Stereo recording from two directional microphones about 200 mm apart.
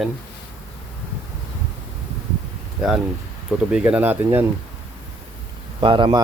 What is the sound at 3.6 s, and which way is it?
Speech, 5° right (ahead or behind).